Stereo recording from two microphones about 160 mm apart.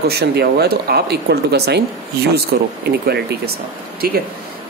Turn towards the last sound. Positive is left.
turn(degrees=-70)  # may be behind; listen again after turning